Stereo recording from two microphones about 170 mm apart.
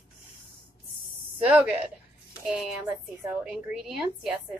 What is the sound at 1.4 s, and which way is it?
Speech, 10° right (ahead or behind).